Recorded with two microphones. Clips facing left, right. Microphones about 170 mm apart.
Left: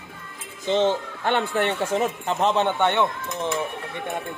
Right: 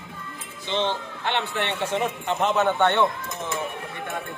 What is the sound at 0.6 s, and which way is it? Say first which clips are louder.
Speech: left 5 dB; 40° left (ahead or behind).